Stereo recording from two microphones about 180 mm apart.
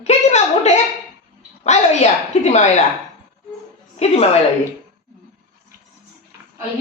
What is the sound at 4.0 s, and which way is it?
Speech, 35° left (ahead or behind).